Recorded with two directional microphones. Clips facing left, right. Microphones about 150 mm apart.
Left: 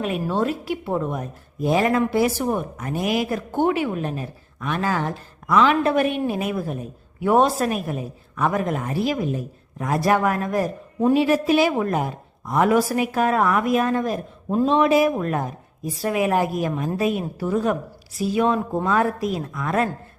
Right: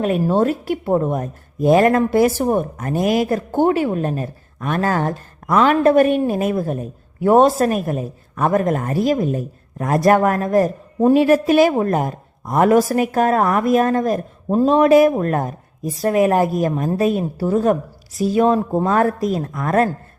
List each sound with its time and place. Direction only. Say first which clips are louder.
0.0 s a woman's voice: right 6 dB; 45° right (ahead or behind)